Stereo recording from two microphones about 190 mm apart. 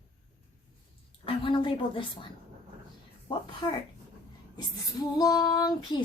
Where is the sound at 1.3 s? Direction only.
25° left (ahead or behind).